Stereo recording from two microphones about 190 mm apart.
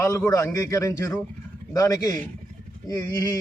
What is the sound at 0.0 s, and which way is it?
A man's voice, 15° left (ahead or behind).